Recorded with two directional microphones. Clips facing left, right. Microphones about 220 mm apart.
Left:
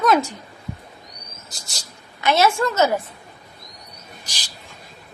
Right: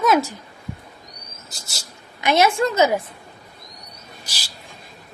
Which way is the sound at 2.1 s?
15° right (ahead or behind).